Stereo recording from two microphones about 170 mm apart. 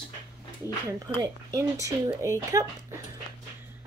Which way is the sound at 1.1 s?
20° right (ahead or behind).